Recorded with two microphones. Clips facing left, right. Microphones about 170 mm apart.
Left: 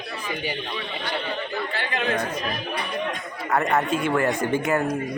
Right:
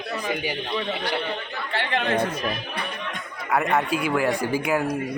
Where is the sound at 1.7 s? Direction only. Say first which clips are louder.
Right 2 dB; 60° right (ahead or behind).